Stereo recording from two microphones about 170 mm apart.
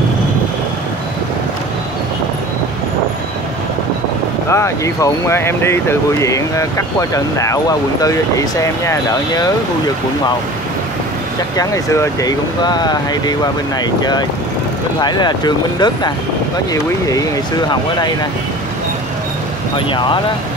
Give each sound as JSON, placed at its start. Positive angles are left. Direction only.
{"t": 4.5, "sound": "speech", "side_deg": 15}
{"t": 11.5, "sound": "speech", "side_deg": 15}
{"t": 15.0, "sound": "speech", "side_deg": 25}
{"t": 17.6, "sound": "speech", "side_deg": 25}
{"t": 19.9, "sound": "speech", "side_deg": 30}